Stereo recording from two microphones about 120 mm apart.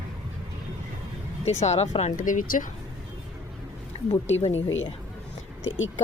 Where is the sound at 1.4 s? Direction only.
65° left (ahead or behind); by 2.6 s 90° left.